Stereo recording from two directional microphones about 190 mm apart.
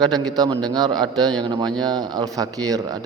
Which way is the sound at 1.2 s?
Centre (ahead or behind).